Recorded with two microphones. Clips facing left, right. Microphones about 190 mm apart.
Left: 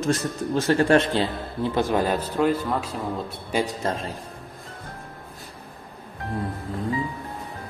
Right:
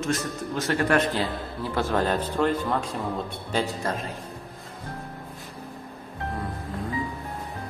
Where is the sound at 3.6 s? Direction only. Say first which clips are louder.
Left 2 dB; 25° left (ahead or behind).